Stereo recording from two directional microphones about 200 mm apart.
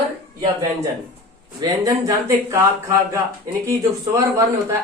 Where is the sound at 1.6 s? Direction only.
15° right (ahead or behind).